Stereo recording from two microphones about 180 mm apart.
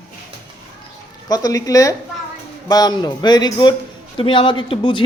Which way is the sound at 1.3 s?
20° left (ahead or behind).